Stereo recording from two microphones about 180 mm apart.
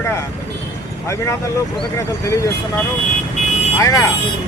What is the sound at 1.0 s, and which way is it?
Speech, 15° left (ahead or behind).